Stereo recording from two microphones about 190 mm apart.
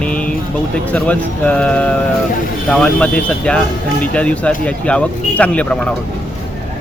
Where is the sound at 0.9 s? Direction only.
5° left (ahead or behind).